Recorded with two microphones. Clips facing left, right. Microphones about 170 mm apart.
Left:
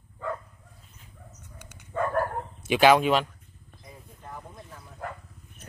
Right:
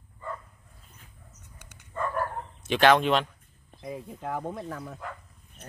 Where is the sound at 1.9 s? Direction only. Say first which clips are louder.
Left 4 dB; 70° left (ahead or behind).